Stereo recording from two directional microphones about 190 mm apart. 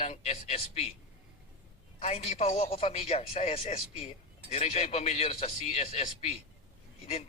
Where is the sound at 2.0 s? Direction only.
35° left (ahead or behind).